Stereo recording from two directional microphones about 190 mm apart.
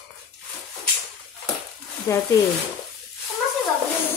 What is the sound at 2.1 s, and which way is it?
Speech, 15° left (ahead or behind).